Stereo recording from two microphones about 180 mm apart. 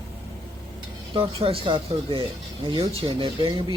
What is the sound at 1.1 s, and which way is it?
Speech, 30° right (ahead or behind).